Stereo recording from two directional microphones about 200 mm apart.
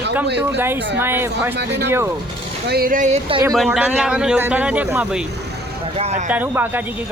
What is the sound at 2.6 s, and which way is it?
Speech, 50° right (ahead or behind).